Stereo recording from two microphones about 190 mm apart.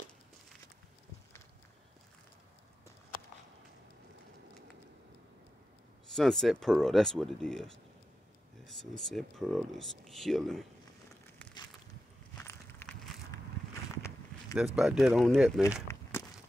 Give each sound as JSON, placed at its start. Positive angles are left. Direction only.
{"t": 6.1, "sound": "speech", "side_deg": 0}
{"t": 12.4, "sound": "walk", "side_deg": 10}
{"t": 14.8, "sound": "speech", "side_deg": 0}
{"t": 15.9, "sound": "a sound", "side_deg": 15}